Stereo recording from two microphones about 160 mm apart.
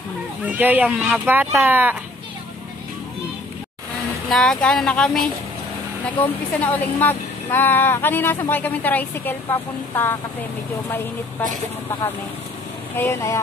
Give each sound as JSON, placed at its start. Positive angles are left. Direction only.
{"t": 0.5, "sound": "speech", "side_deg": -10}
{"t": 4.3, "sound": "speech", "side_deg": 5}
{"t": 6.6, "sound": "speech", "side_deg": 10}
{"t": 12.9, "sound": "speech", "side_deg": 15}